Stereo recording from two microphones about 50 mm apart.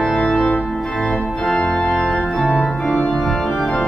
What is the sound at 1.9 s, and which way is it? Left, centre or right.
Organ, centre.